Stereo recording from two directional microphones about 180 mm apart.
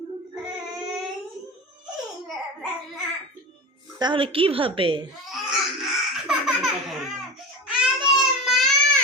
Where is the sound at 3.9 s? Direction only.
25° right (ahead or behind).